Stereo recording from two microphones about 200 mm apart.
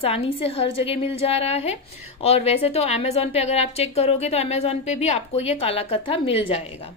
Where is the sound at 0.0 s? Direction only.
30° left (ahead or behind).